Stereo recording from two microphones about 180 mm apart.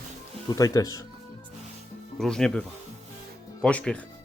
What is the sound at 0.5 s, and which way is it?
Speech, 20° left (ahead or behind).